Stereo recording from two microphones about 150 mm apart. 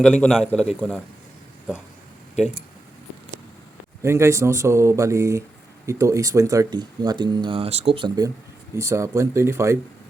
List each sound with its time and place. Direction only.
0.0 s a man's voice: 5° left (ahead or behind)
4.0 s speech: 20° right (ahead or behind)